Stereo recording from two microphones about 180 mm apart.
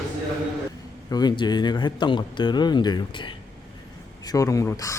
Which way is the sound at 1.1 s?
25° left (ahead or behind).